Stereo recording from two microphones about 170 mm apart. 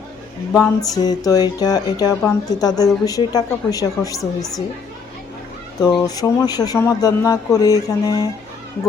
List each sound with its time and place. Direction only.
0.6 s speech: 20° left (ahead or behind)
6.0 s speech: 20° left (ahead or behind)